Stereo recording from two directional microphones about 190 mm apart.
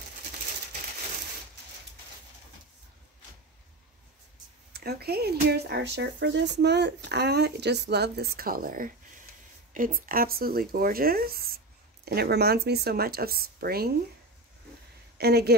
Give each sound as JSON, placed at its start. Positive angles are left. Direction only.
{"t": 4.7, "sound": "speech", "side_deg": -55}
{"t": 15.1, "sound": "speech", "side_deg": -55}